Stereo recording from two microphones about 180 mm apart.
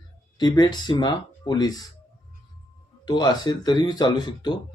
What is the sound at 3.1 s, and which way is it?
Speech, 25° left (ahead or behind).